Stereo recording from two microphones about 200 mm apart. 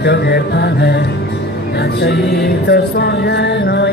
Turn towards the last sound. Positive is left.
turn(degrees=60)  # may be behind; listen again after turning